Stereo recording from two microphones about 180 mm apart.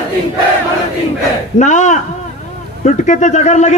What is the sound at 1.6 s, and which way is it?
A man's voice, 40° left (ahead or behind).